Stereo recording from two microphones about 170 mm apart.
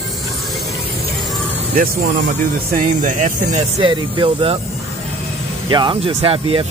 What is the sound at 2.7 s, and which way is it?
Speech, 50° right (ahead or behind).